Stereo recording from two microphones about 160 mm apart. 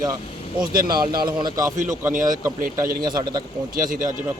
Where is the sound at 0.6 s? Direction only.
65° right (ahead or behind).